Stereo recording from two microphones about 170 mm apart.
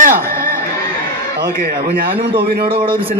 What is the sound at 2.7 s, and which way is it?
Speech, 30° right (ahead or behind).